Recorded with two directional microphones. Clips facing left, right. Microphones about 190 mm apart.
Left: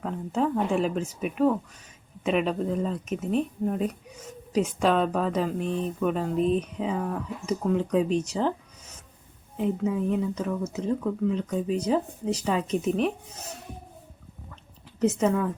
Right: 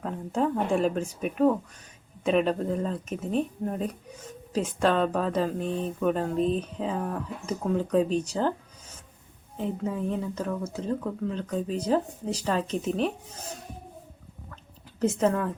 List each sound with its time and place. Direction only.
0.0 s speech: centre (ahead or behind)
9.6 s speech: 5° left (ahead or behind)
14.9 s speech: 5° left (ahead or behind)